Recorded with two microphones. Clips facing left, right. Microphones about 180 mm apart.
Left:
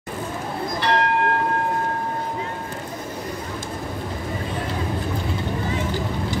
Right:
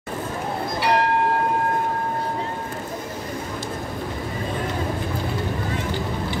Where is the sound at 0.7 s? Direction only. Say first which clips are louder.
Right 1 dB; 5° right (ahead or behind).